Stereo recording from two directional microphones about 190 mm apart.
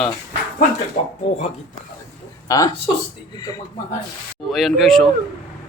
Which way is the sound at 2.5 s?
20° left (ahead or behind).